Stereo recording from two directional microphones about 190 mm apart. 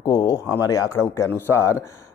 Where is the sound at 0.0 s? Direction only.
15° left (ahead or behind).